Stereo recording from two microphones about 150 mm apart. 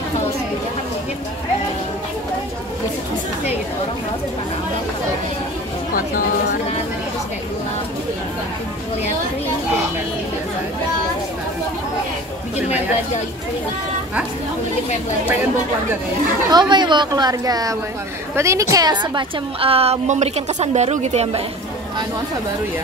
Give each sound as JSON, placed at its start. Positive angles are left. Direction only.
{"t": 16.4, "sound": "a woman's voice", "side_deg": -30}